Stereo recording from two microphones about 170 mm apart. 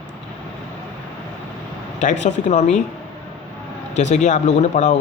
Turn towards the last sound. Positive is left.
turn(degrees=45)  # may be behind; listen again after turning